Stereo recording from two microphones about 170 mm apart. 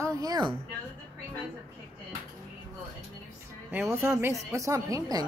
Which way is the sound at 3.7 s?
10° right (ahead or behind).